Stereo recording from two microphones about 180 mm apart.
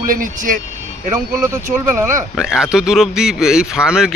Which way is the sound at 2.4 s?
Centre (ahead or behind).